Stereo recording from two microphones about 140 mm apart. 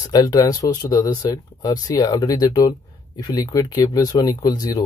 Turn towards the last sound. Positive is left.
turn(degrees=25)  # may be behind; listen again after turning